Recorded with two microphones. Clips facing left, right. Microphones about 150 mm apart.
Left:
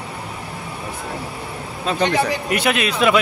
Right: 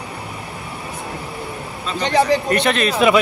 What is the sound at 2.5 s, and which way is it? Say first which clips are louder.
Speech: right 2 dB; 5° left (ahead or behind).